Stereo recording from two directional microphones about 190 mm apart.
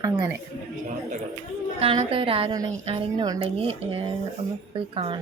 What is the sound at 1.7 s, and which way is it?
A woman's voice, 30° right (ahead or behind).